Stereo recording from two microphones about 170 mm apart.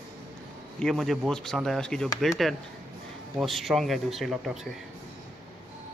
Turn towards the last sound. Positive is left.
turn(degrees=0)  # may be behind; listen again after turning